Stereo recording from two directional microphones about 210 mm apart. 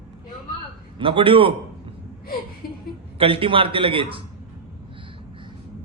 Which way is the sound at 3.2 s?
25° right (ahead or behind).